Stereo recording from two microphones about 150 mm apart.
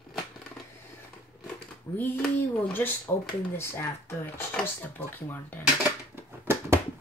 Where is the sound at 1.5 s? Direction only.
15° left (ahead or behind).